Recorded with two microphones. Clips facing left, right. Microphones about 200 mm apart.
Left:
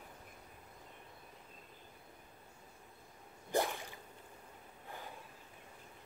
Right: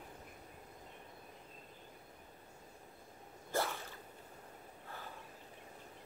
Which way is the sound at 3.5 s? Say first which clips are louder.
Left 3 dB; 15° left (ahead or behind).